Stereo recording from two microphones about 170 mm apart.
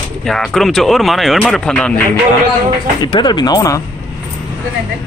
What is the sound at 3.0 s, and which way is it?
Speech, 25° left (ahead or behind).